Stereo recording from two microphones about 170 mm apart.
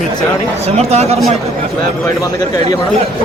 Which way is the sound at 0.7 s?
40° right (ahead or behind).